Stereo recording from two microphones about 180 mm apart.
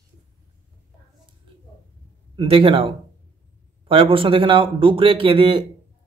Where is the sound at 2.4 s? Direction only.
30° right (ahead or behind).